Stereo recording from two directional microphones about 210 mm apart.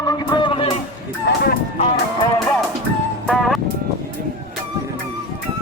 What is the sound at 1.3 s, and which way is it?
Speech, 45° left (ahead or behind).